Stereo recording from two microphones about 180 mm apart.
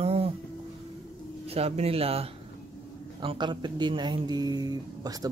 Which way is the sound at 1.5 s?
35° right (ahead or behind).